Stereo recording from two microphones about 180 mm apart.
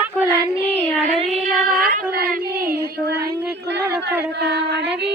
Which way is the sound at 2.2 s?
50° right (ahead or behind).